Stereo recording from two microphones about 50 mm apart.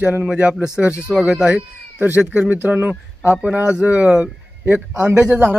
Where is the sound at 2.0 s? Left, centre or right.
Right.